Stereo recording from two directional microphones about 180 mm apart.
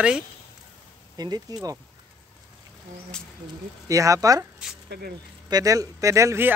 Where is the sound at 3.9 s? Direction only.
20° right (ahead or behind).